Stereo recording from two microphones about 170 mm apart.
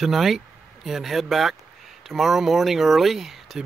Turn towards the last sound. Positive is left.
turn(degrees=0)  # may be behind; listen again after turning